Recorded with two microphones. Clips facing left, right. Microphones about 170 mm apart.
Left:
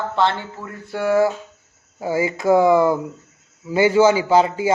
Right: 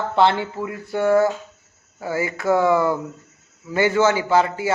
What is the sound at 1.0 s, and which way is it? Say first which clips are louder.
A man's voice: even; 5° left (ahead or behind).